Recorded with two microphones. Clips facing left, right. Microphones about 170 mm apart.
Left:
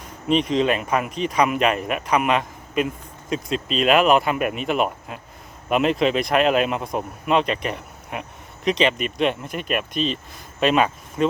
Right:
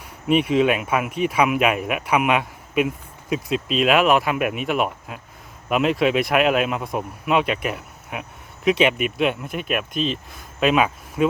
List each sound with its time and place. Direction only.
0.3 s speech: 10° right (ahead or behind)